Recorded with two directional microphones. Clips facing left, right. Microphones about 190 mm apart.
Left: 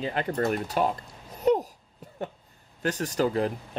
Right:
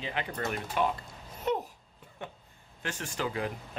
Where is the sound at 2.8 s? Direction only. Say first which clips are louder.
Left 10 dB; 40° left (ahead or behind).